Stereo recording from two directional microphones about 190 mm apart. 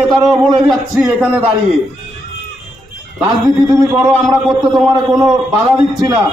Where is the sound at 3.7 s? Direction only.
15° right (ahead or behind).